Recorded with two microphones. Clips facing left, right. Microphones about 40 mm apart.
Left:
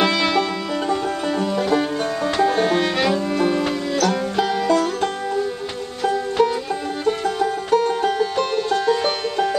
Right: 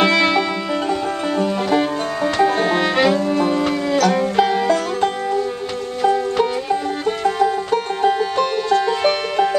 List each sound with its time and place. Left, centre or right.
0.0 s music: centre
3.9 s music: centre